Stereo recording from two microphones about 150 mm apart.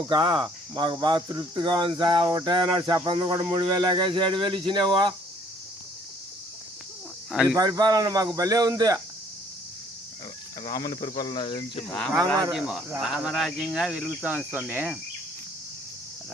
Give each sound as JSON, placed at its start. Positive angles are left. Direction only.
{"t": 0.1, "sound": "cricket", "side_deg": -30}
{"t": 7.3, "sound": "speech", "side_deg": 0}
{"t": 7.6, "sound": "speech", "side_deg": -25}
{"t": 10.7, "sound": "speech", "side_deg": 25}
{"t": 12.5, "sound": "speech", "side_deg": 0}